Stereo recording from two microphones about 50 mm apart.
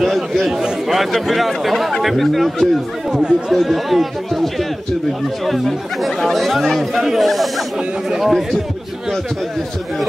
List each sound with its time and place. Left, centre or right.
0.0 s speech: centre
3.2 s speech: centre
3.5 s speech: centre